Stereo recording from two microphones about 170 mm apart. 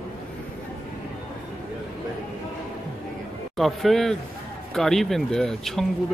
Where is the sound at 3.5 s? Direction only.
Centre (ahead or behind).